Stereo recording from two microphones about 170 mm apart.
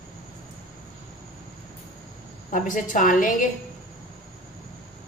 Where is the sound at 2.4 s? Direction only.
50° left (ahead or behind).